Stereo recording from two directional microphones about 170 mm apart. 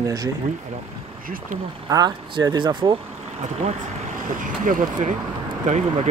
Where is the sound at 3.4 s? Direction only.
40° right (ahead or behind).